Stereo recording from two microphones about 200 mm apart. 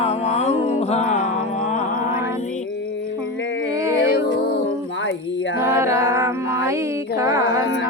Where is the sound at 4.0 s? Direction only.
50° left (ahead or behind).